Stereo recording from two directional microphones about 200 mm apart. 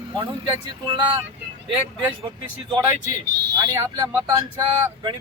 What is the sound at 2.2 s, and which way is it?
Speech, 25° right (ahead or behind).